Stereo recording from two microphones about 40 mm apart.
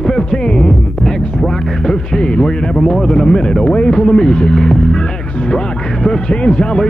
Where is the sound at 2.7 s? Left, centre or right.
Centre.